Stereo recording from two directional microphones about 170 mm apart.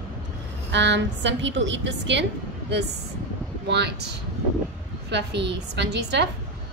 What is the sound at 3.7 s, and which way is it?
A woman's voice, 90° right.